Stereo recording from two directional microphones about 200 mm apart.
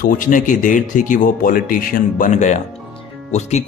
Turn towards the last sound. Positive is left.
turn(degrees=35)  # may be behind; listen again after turning